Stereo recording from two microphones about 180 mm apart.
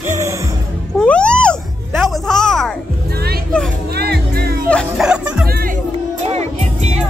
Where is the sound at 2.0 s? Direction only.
5° left (ahead or behind).